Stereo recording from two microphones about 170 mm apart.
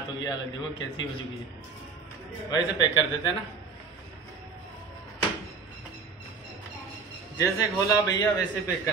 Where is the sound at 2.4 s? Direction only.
25° left (ahead or behind).